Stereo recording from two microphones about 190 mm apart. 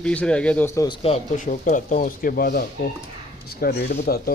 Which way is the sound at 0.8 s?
30° left (ahead or behind).